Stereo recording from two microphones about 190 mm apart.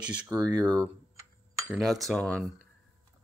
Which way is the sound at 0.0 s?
5° right (ahead or behind).